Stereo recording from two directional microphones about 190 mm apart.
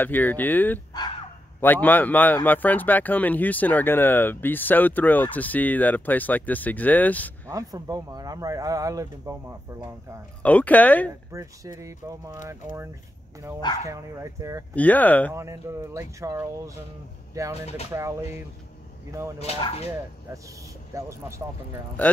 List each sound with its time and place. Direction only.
0.0 s speech: 10° left (ahead or behind)
7.4 s speech: 20° right (ahead or behind)
10.4 s speech: 10° left (ahead or behind)
11.1 s speech: 15° right (ahead or behind)
14.8 s speech: 10° left (ahead or behind)
15.3 s speech: 15° right (ahead or behind)
19.6 s speech: 30° left (ahead or behind)
20.9 s speech: 15° right (ahead or behind)
22.0 s speech: 10° left (ahead or behind)